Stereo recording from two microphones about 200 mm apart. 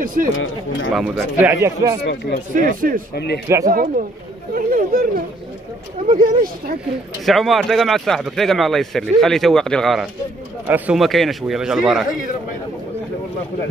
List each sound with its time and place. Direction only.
0.0 s speech: 45° right (ahead or behind)
0.9 s speech: 5° right (ahead or behind)
2.0 s speech: 60° left (ahead or behind)
2.5 s speech: 45° right (ahead or behind)
3.4 s speech: 15° right (ahead or behind)
4.6 s speech: 45° right (ahead or behind)
7.2 s speech: centre (ahead or behind)